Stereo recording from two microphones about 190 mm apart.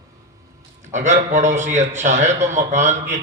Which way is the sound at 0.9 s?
40° right (ahead or behind).